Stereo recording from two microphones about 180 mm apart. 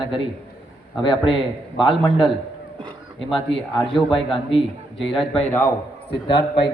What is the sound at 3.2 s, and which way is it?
A man's voice, centre (ahead or behind).